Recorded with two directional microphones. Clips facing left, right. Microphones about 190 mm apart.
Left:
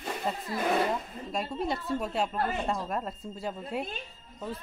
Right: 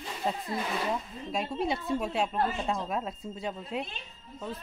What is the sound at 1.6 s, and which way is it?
Speech, centre (ahead or behind).